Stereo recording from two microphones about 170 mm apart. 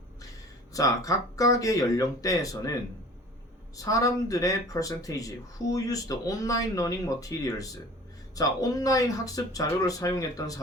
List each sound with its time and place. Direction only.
0.7 s speech: 20° left (ahead or behind)
3.8 s speech: 20° left (ahead or behind)